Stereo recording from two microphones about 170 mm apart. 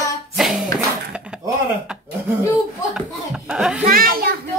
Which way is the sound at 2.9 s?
5° right (ahead or behind).